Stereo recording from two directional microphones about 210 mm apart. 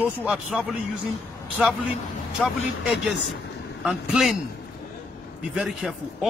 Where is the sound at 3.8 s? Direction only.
Centre (ahead or behind).